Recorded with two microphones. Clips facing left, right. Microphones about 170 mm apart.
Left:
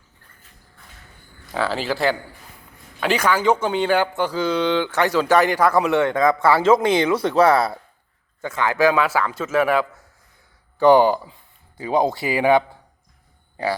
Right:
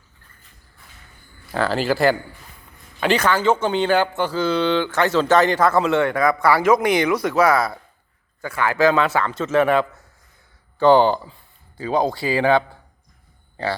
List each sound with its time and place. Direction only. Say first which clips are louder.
1.5 s speech: right 3 dB; centre (ahead or behind)
11.8 s speech: left 1 dB; 20° left (ahead or behind)